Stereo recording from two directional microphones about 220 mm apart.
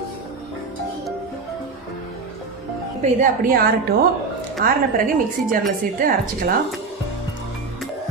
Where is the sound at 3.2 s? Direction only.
40° right (ahead or behind).